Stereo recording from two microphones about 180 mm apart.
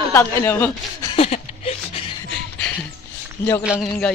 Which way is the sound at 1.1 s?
35° left (ahead or behind).